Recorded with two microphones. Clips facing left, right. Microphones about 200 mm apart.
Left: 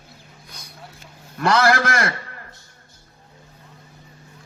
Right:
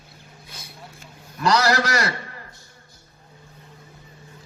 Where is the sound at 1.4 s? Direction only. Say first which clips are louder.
Left 2 dB; 50° left (ahead or behind).